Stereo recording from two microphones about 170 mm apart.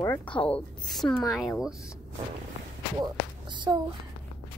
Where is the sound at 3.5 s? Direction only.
25° right (ahead or behind).